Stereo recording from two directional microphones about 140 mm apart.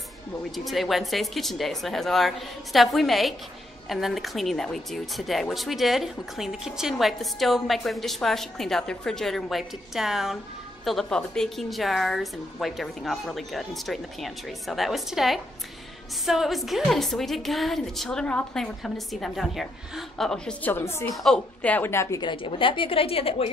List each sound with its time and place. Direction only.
0.7 s speech: centre (ahead or behind)
20.7 s speech: 15° left (ahead or behind)
21.1 s speech: centre (ahead or behind); by 22.2 s 20° left (ahead or behind)
22.2 s a woman's voice: 35° left (ahead or behind)